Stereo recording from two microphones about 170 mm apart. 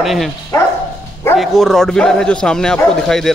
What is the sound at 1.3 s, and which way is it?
Speech, centre (ahead or behind).